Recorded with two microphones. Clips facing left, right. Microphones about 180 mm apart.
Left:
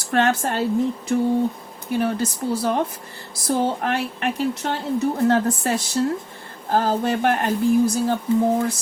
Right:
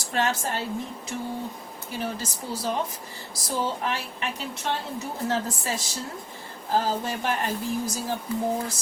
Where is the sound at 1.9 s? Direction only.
60° left (ahead or behind).